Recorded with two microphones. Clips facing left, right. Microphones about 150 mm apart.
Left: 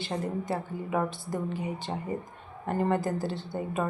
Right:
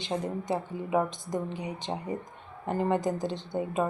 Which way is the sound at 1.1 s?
20° right (ahead or behind).